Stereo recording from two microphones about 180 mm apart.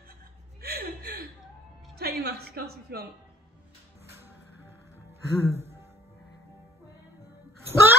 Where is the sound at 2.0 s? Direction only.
60° right (ahead or behind).